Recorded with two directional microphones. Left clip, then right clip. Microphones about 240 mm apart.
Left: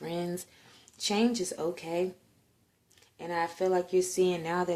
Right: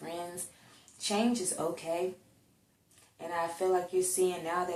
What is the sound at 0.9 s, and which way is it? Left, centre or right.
Speech, left.